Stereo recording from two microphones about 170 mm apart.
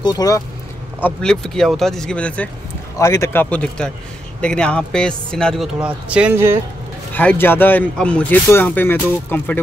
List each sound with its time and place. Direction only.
0.0 s speech: 20° left (ahead or behind)
1.0 s a man's voice: 5° left (ahead or behind); by 6.6 s 15° right (ahead or behind)
7.2 s speech: 10° left (ahead or behind)